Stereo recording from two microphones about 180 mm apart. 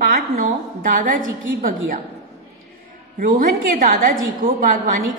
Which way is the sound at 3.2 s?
50° right (ahead or behind).